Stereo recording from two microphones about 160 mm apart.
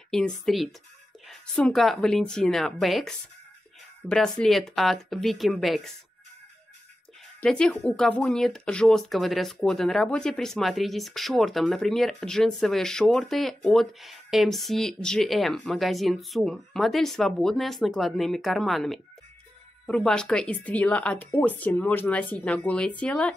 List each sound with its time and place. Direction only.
0.1 s speech: 5° left (ahead or behind)
7.3 s speech: 5° left (ahead or behind)